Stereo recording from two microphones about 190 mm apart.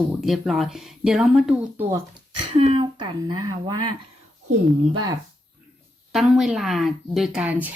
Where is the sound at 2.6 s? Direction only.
25° right (ahead or behind).